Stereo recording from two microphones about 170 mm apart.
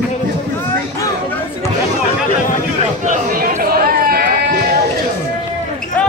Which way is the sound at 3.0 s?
55° right (ahead or behind).